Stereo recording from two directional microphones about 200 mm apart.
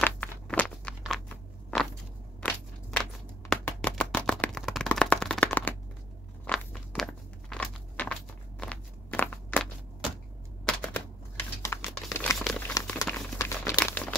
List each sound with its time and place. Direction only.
0.0 s crunch: 10° left (ahead or behind)
3.0 s a sound: 5° left (ahead or behind)
6.4 s crunch: 5° left (ahead or behind)
10.6 s typewriter: 5° left (ahead or behind)
11.6 s crumpling: 15° left (ahead or behind)